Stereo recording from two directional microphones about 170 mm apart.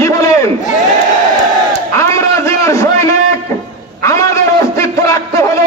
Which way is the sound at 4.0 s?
20° left (ahead or behind).